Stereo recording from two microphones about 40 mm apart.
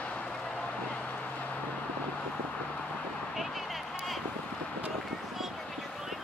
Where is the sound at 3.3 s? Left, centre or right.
Centre.